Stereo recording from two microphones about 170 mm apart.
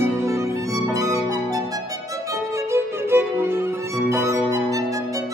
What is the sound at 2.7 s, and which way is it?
Music, 15° right (ahead or behind).